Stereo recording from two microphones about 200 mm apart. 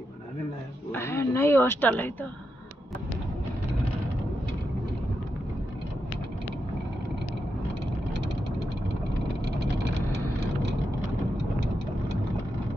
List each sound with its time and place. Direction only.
0.9 s speech: 10° left (ahead or behind)
10.1 s vehicle: 60° right (ahead or behind)